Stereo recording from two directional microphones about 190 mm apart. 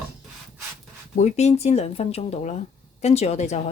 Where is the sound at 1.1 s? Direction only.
35° left (ahead or behind).